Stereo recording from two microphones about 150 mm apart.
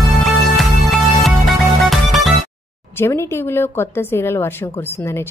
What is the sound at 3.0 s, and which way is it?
A woman's voice, 15° left (ahead or behind).